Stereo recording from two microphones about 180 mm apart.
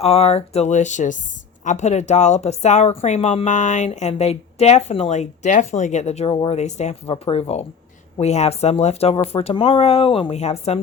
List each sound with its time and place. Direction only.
0.0 s speech: 35° left (ahead or behind)